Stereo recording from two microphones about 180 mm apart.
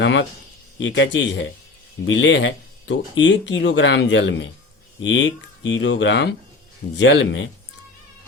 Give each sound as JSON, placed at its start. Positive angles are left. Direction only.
{"t": 0.0, "sound": "speech", "side_deg": 90}